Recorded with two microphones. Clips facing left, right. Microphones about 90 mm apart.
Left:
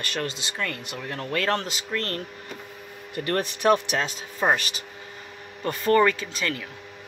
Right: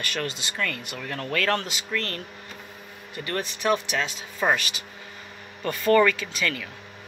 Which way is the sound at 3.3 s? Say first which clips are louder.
Left 4 dB; 55° left (ahead or behind).